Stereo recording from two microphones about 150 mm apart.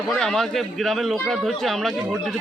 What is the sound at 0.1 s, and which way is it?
A man's voice, 5° left (ahead or behind).